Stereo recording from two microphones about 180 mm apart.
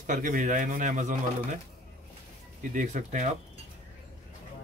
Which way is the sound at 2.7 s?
45° right (ahead or behind).